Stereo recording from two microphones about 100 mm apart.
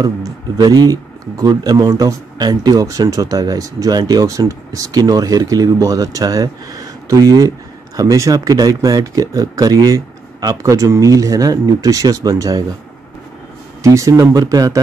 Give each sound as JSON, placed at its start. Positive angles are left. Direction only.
{"t": 0.0, "sound": "speech", "side_deg": -40}
{"t": 13.8, "sound": "speech", "side_deg": -30}